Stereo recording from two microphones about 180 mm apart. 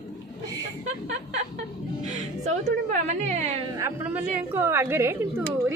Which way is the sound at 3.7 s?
10° right (ahead or behind).